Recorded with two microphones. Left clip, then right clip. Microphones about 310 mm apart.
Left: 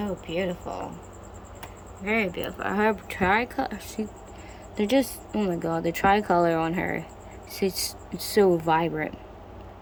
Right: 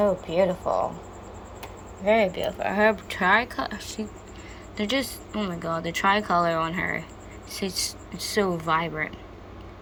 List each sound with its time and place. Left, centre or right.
0.0 s speech: centre
2.0 s speech: centre